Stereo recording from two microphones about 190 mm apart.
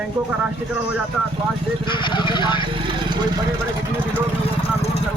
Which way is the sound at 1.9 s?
25° left (ahead or behind).